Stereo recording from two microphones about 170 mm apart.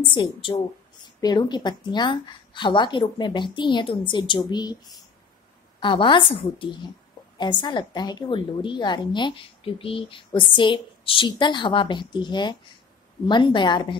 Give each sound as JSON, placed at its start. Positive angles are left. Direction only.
{"t": 0.1, "sound": "a woman's voice", "side_deg": 30}
{"t": 5.8, "sound": "a woman's voice", "side_deg": 30}